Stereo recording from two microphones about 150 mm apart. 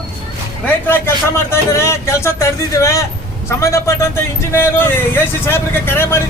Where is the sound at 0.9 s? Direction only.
15° left (ahead or behind).